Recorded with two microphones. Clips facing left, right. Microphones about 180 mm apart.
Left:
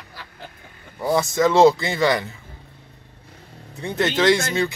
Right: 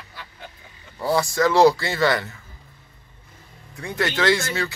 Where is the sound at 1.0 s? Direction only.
20° left (ahead or behind).